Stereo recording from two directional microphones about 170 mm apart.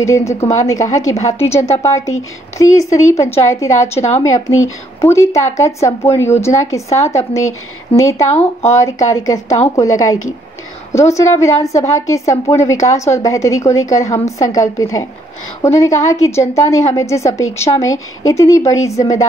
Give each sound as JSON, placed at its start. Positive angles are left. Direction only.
{"t": 0.0, "sound": "a woman's voice", "side_deg": 15}